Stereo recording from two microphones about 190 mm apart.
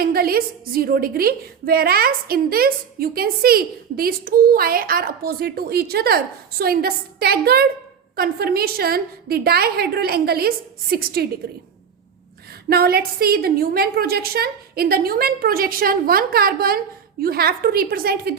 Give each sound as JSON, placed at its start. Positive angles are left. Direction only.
{"t": 0.0, "sound": "a woman's voice", "side_deg": -50}
{"t": 12.6, "sound": "a woman's voice", "side_deg": -55}